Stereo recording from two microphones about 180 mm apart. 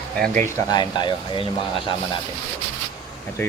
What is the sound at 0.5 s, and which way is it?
Speech, 20° left (ahead or behind).